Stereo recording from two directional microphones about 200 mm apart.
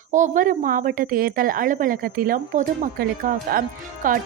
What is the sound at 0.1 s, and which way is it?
A woman's voice, 40° right (ahead or behind).